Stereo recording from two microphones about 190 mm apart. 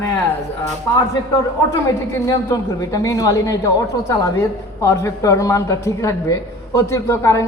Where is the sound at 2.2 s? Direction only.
20° left (ahead or behind).